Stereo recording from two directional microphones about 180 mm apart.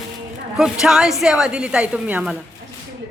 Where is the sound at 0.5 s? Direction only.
5° right (ahead or behind).